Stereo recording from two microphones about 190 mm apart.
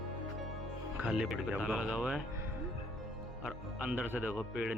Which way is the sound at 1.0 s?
5° right (ahead or behind).